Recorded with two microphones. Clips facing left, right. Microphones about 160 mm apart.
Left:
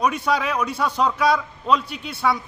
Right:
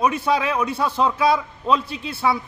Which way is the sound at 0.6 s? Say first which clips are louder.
Right 1 dB; 25° right (ahead or behind).